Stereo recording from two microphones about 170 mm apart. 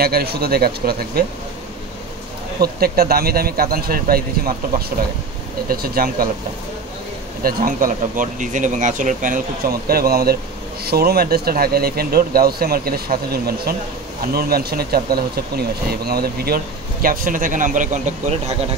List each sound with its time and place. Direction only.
0.0 s speech: 65° right (ahead or behind)
2.6 s speech: 65° right (ahead or behind)
7.4 s speech: 55° right (ahead or behind)
9.8 s speech: 65° right (ahead or behind); by 18.3 s 50° right (ahead or behind)